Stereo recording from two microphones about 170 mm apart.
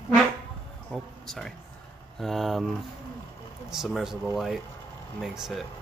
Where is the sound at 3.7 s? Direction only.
Centre (ahead or behind).